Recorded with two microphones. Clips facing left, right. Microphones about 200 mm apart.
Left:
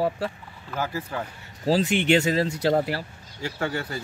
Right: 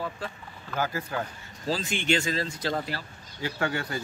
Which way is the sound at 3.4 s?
Centre (ahead or behind).